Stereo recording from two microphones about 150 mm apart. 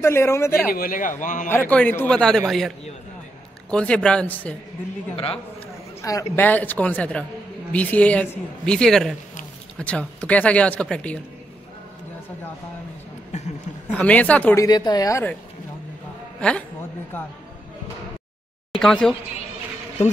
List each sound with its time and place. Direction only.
0.0 s speech: 15° left (ahead or behind)
0.7 s a man's voice: 70° left (ahead or behind)
1.5 s speech: 10° left (ahead or behind)
3.7 s speech: 5° left (ahead or behind)
5.1 s a man's voice: 40° left (ahead or behind)
6.3 s speech: 10° left (ahead or behind)
13.9 s speech: 10° left (ahead or behind)
14.6 s speech: 30° left (ahead or behind)
16.3 s a man's voice: 5° left (ahead or behind)
18.7 s speech: 5° left (ahead or behind)